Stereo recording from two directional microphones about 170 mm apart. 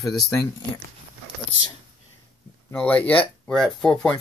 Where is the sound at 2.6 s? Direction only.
10° left (ahead or behind).